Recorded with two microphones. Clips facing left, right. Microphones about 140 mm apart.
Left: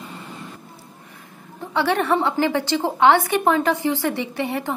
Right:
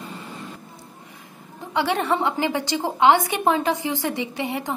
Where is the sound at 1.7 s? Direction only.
15° right (ahead or behind).